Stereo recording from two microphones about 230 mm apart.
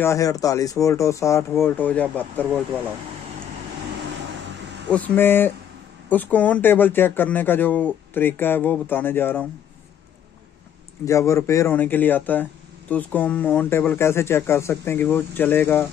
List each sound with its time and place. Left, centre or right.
0.0 s speech: centre
4.8 s speech: centre
11.1 s speech: centre